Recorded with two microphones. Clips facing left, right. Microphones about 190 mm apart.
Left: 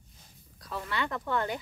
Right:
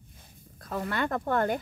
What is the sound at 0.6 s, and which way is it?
Speech, 50° right (ahead or behind).